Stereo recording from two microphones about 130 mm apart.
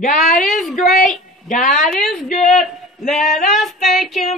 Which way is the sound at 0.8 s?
75° left (ahead or behind).